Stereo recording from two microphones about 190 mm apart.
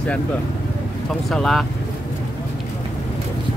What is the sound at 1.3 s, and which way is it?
Speech, centre (ahead or behind).